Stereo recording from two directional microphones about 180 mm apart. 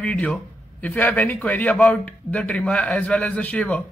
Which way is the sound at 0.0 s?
5° left (ahead or behind).